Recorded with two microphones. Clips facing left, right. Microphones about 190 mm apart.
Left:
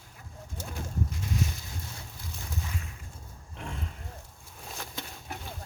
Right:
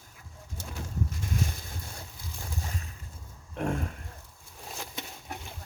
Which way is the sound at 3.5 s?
50° right (ahead or behind).